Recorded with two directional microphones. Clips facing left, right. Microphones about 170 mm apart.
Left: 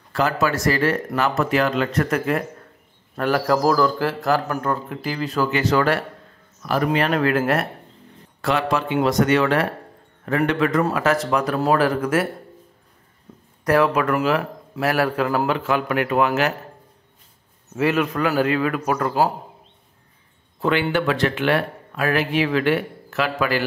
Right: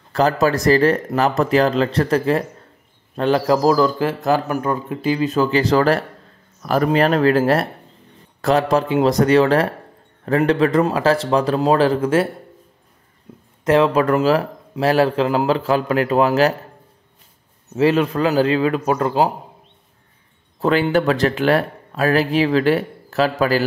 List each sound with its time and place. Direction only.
0.1 s a man's voice: 35° right (ahead or behind); by 5.5 s 20° right (ahead or behind)
5.5 s a man's voice: 35° right (ahead or behind)
13.3 s a sound: 15° right (ahead or behind)
13.7 s speech: 25° right (ahead or behind)
17.7 s a man's voice: 30° right (ahead or behind)
20.6 s speech: 40° right (ahead or behind)